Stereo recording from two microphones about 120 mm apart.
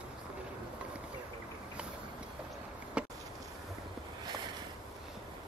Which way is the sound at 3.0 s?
10° right (ahead or behind).